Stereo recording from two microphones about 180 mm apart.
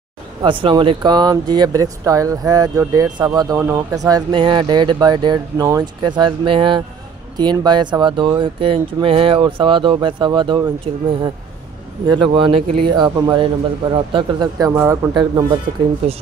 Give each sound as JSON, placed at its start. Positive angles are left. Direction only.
{"t": 0.4, "sound": "speech", "side_deg": -25}
{"t": 12.1, "sound": "speech", "side_deg": -25}
{"t": 16.0, "sound": "speech", "side_deg": -35}